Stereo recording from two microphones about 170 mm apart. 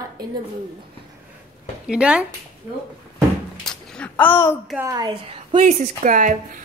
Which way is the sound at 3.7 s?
5° left (ahead or behind).